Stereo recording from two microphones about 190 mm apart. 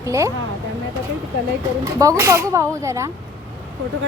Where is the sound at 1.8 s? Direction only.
15° right (ahead or behind).